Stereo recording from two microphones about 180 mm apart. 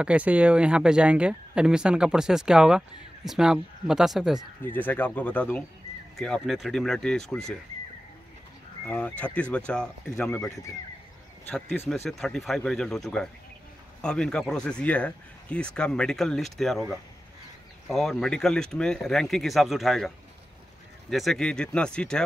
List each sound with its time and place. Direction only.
0.0 s speech: 5° right (ahead or behind)
4.7 s speech: 10° left (ahead or behind)
8.8 s speech: 10° left (ahead or behind)
21.1 s speech: centre (ahead or behind)